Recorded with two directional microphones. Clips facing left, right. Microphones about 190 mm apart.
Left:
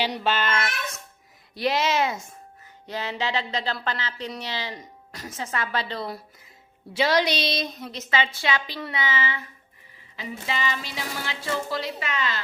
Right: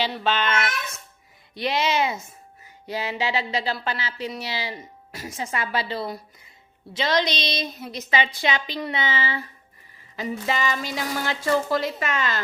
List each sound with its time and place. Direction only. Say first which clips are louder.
0.0 s a child's voice: right 1 dB; 10° left (ahead or behind); by 9.5 s 35° right (ahead or behind)
10.2 s a woman's voice: right 4 dB; 45° right (ahead or behind)